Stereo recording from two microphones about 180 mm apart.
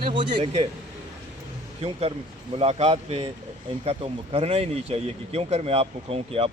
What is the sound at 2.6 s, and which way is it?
Speech, 35° right (ahead or behind).